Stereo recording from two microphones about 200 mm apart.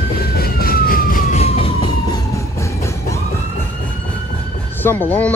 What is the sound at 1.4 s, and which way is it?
Emergency vehicle, 30° left (ahead or behind).